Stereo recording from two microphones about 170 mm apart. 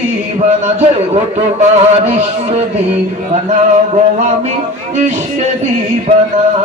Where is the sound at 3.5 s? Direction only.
45° right (ahead or behind).